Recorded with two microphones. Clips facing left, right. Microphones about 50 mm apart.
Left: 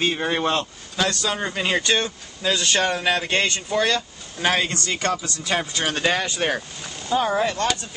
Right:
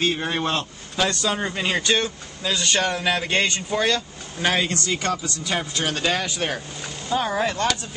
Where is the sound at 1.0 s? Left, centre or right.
Centre.